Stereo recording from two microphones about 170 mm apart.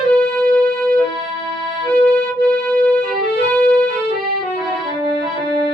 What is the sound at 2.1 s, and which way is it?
Music, 5° left (ahead or behind).